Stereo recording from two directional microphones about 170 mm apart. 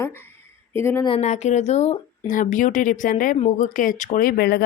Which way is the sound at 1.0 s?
35° left (ahead or behind).